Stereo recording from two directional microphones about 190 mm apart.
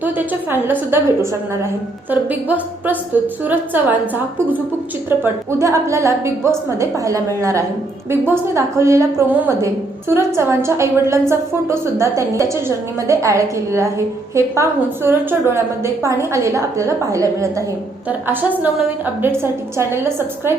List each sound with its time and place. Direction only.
0.5 s a woman's voice: 10° right (ahead or behind)